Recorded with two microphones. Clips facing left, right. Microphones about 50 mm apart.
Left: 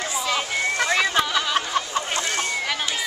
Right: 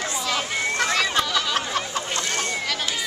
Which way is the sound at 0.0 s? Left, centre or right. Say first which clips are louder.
Left 1 dB; centre.